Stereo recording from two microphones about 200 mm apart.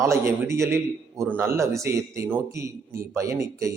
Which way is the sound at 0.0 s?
15° right (ahead or behind).